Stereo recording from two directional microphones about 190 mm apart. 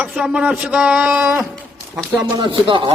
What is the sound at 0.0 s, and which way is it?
Speech, 5° right (ahead or behind).